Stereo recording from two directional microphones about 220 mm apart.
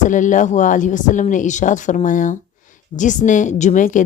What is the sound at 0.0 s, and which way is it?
Speech, 35° left (ahead or behind).